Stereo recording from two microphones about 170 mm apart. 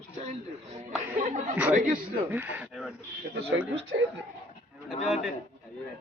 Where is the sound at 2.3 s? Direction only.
10° right (ahead or behind).